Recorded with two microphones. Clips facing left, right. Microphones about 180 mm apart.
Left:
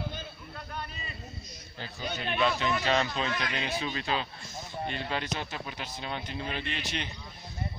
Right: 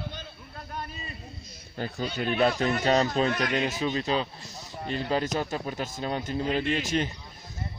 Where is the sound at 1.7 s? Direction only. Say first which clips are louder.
Right 6 dB; 50° right (ahead or behind).